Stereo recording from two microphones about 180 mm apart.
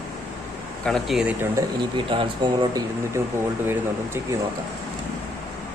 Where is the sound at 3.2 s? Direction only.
15° right (ahead or behind).